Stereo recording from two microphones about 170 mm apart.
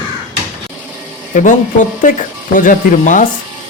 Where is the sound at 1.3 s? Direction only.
50° left (ahead or behind).